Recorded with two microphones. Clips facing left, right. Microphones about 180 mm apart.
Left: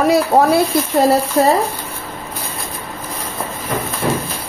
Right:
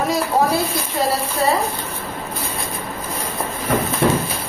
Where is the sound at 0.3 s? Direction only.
55° left (ahead or behind).